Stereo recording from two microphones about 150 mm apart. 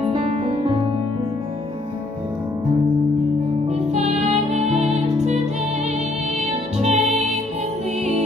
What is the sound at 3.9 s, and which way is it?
Music, 45° right (ahead or behind).